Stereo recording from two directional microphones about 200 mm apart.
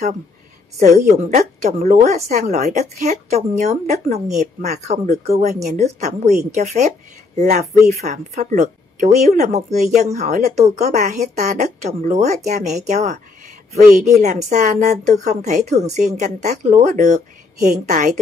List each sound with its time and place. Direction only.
0.7 s a woman's voice: 35° right (ahead or behind)